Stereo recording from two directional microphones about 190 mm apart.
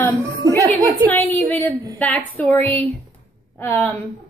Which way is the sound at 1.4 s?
10° left (ahead or behind).